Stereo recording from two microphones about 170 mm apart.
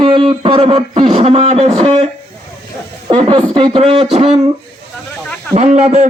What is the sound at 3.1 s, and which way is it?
Speech, 25° right (ahead or behind).